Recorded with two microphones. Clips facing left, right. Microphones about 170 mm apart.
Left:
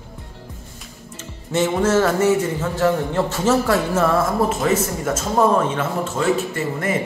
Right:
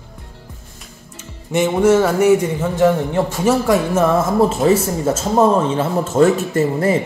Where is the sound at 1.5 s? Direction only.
15° right (ahead or behind).